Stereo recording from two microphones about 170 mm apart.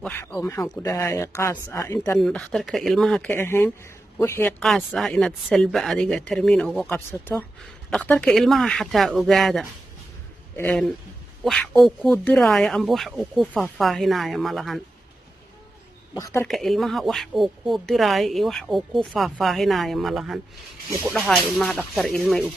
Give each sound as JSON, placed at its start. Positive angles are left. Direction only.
{"t": 0.0, "sound": "speech", "side_deg": 15}
{"t": 2.1, "sound": "speech", "side_deg": 0}
{"t": 4.6, "sound": "speech", "side_deg": 0}
{"t": 10.5, "sound": "a man's voice", "side_deg": 15}
{"t": 11.4, "sound": "speech", "side_deg": 5}
{"t": 16.2, "sound": "speech", "side_deg": 15}
{"t": 16.4, "sound": "speech", "side_deg": 0}